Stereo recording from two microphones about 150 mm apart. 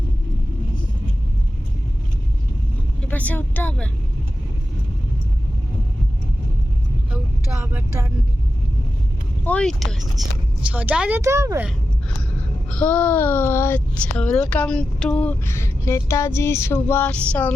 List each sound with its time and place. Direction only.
3.0 s a woman's voice: 10° left (ahead or behind)
7.6 s speech: 15° right (ahead or behind)
9.4 s speech: 10° left (ahead or behind); by 11.6 s 20° right (ahead or behind)
12.7 s speech: 10° left (ahead or behind)